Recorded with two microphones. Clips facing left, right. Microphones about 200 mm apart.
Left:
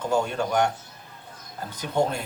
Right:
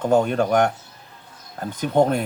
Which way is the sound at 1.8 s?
55° right (ahead or behind).